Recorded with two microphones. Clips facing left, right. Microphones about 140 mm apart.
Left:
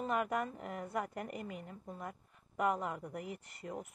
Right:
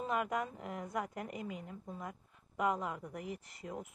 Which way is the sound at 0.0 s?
Centre (ahead or behind).